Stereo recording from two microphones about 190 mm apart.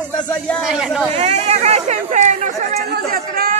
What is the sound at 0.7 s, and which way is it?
Speech, 5° right (ahead or behind).